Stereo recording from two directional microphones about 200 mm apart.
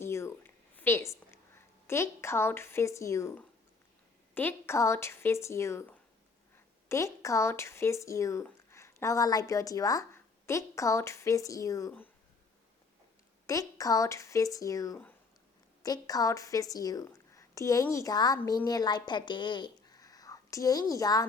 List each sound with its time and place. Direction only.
0.0 s a sound: 15° left (ahead or behind)
4.4 s speech: 10° left (ahead or behind)
13.5 s a woman's voice: 15° left (ahead or behind)